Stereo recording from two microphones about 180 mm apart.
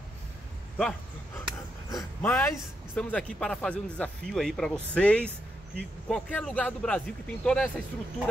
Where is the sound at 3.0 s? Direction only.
5° left (ahead or behind).